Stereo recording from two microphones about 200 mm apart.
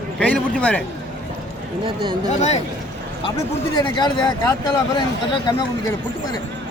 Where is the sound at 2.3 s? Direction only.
35° left (ahead or behind).